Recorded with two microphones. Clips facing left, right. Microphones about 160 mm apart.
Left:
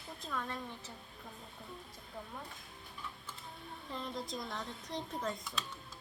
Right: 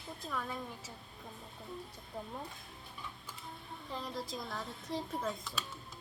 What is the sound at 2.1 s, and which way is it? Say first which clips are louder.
Speech: right 4 dB; 20° right (ahead or behind).